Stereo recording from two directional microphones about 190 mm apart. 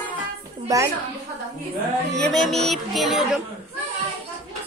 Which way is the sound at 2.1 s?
Centre (ahead or behind).